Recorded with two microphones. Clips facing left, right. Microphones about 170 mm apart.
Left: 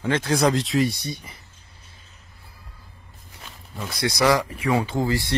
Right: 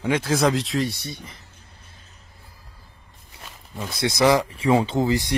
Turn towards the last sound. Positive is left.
turn(degrees=-20)  # may be behind; listen again after turning